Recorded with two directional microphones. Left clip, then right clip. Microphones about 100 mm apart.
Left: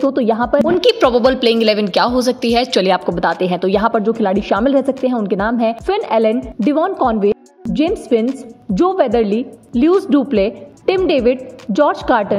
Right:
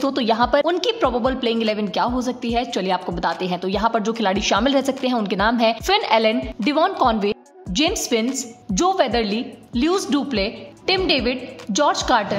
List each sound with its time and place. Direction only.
0.1 s a woman's voice: 35° left (ahead or behind); by 12.4 s 55° left (ahead or behind)